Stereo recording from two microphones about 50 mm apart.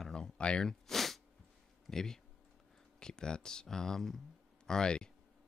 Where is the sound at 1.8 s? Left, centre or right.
Centre.